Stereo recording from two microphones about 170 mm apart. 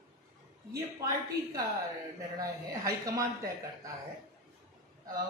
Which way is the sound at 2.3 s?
20° right (ahead or behind).